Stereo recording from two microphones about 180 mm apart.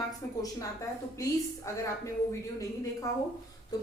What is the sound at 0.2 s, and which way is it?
A woman's voice, 15° left (ahead or behind).